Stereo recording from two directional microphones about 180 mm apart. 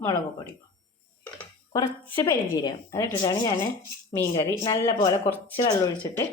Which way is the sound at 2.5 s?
20° left (ahead or behind).